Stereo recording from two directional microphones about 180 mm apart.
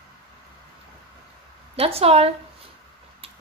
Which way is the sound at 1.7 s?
35° right (ahead or behind).